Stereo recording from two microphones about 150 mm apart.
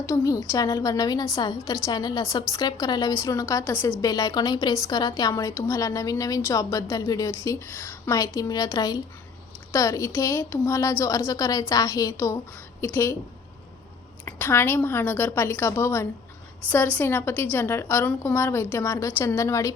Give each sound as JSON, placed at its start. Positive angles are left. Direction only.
{"t": 0.0, "sound": "a woman's voice", "side_deg": 20}
{"t": 14.3, "sound": "a woman's voice", "side_deg": 15}